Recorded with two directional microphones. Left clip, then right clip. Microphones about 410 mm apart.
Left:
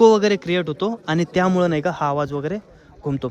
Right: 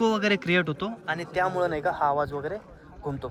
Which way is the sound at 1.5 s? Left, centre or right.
Centre.